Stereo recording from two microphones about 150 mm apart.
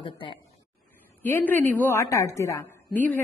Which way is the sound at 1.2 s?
10° left (ahead or behind).